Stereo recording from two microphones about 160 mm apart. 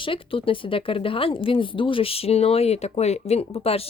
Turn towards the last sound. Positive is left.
turn(degrees=40)  # may be behind; listen again after turning